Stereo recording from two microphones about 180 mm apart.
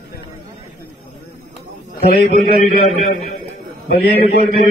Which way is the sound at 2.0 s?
55° left (ahead or behind).